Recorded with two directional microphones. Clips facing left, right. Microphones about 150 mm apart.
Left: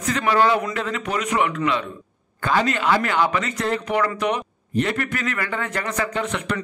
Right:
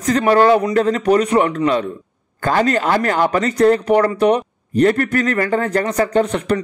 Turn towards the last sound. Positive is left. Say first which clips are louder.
# right 9 dB
turn(degrees=-35)  # may be behind; listen again after turning